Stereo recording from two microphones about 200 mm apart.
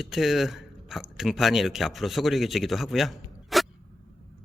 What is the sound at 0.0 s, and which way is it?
Speech, centre (ahead or behind).